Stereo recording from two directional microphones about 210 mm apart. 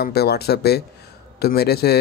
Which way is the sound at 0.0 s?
50° left (ahead or behind).